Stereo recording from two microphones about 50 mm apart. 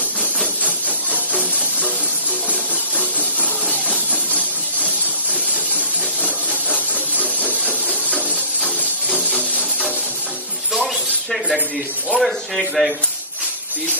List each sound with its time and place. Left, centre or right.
1.1 s music: right
4.4 s a sound: right
12.2 s speech: centre